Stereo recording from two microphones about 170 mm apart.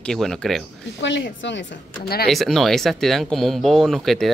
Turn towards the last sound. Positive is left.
turn(degrees=0)  # may be behind; listen again after turning